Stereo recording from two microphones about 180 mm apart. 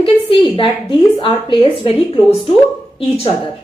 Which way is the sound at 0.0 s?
30° left (ahead or behind).